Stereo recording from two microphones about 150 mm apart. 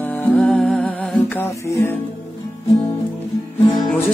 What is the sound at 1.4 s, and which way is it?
Music, 20° left (ahead or behind).